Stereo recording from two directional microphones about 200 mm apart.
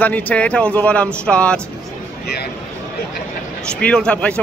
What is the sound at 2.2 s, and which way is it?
Speech, 55° left (ahead or behind).